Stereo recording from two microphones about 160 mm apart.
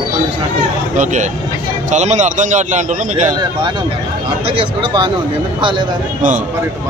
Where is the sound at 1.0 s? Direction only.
50° right (ahead or behind).